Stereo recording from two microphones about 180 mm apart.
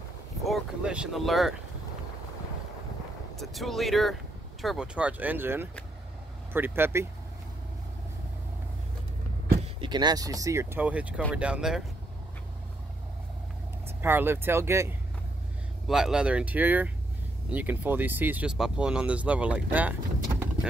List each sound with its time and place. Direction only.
0.4 s speech: 5° right (ahead or behind)
3.3 s speech: centre (ahead or behind)
9.8 s speech: 25° right (ahead or behind); by 11.8 s 5° right (ahead or behind)
13.8 s speech: 10° right (ahead or behind)
15.9 s speech: 5° right (ahead or behind)